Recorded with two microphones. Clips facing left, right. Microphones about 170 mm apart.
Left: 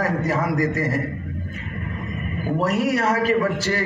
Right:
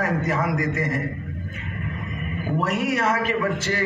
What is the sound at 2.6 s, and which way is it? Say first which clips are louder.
A man's voice: left 3 dB; 35° left (ahead or behind).